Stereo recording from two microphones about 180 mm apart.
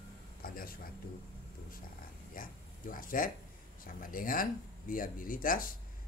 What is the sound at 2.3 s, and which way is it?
Speech, 50° left (ahead or behind).